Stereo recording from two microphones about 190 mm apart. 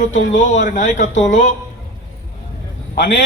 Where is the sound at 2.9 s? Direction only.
70° left (ahead or behind).